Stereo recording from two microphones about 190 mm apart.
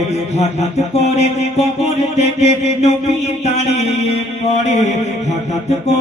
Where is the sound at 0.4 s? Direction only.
35° left (ahead or behind).